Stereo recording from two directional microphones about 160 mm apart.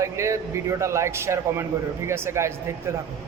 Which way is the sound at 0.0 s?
20° right (ahead or behind).